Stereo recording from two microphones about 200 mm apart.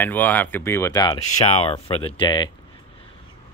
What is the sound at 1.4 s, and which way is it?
Speech, 30° left (ahead or behind).